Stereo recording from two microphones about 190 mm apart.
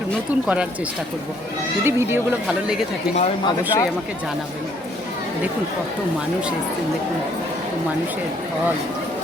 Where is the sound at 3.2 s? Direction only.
30° left (ahead or behind).